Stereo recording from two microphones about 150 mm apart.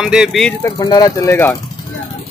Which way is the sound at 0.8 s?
25° left (ahead or behind).